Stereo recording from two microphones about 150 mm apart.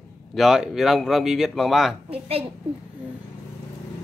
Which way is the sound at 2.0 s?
40° right (ahead or behind).